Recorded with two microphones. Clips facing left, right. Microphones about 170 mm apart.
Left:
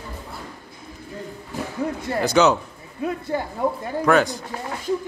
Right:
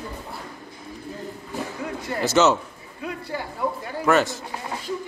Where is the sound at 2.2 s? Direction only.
Centre (ahead or behind).